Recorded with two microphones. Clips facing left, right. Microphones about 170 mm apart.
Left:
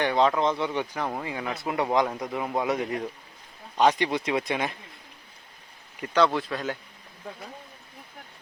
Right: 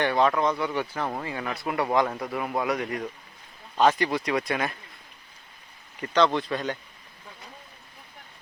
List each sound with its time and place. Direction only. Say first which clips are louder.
0.0 s speech: even; 15° left (ahead or behind)
6.0 s speech: even; 10° left (ahead or behind)